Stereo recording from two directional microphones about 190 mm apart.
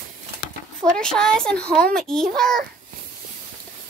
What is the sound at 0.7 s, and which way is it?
A child's voice, 5° left (ahead or behind).